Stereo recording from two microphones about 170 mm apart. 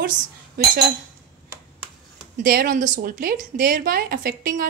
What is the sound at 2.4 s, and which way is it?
A woman's voice, 55° right (ahead or behind).